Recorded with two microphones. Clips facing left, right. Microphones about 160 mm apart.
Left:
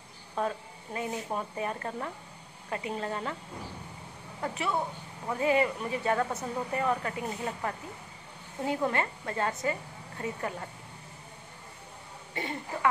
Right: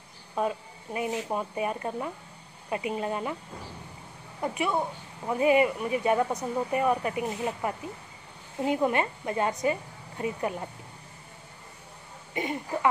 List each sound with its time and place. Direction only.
0.4 s speech: 15° right (ahead or behind)
4.4 s speech: 15° right (ahead or behind)
12.4 s speech: 15° right (ahead or behind)